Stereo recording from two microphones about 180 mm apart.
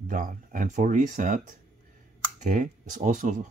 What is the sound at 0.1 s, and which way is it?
Speech, 45° right (ahead or behind).